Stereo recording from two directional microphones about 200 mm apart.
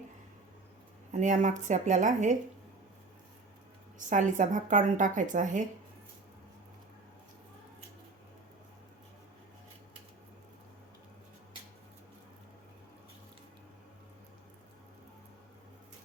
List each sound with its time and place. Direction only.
1.1 s a woman's voice: 40° right (ahead or behind)
3.9 s a woman's voice: 40° right (ahead or behind)